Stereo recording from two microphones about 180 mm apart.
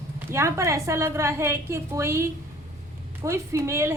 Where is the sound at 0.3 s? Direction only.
15° right (ahead or behind).